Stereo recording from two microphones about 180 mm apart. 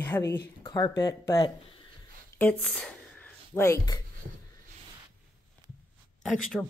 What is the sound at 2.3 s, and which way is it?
Speech, 5° left (ahead or behind).